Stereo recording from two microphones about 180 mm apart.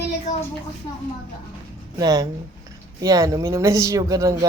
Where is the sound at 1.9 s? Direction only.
20° right (ahead or behind).